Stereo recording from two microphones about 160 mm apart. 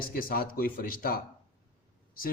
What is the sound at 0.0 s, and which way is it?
A man's voice, 65° left (ahead or behind).